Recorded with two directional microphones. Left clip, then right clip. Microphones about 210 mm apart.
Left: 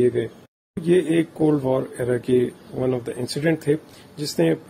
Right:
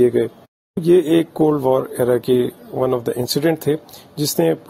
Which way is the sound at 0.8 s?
40° right (ahead or behind).